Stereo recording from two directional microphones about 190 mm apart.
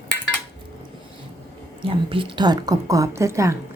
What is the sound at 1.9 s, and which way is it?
A woman's voice, 25° right (ahead or behind).